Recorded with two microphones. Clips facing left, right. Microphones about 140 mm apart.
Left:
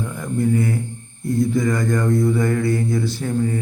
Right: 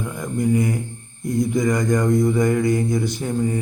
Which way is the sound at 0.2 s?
15° right (ahead or behind).